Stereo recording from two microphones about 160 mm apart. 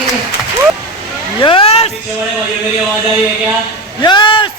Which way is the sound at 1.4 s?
35° left (ahead or behind).